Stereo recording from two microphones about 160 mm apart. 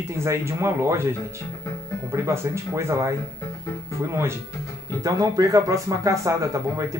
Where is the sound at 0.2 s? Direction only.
15° right (ahead or behind).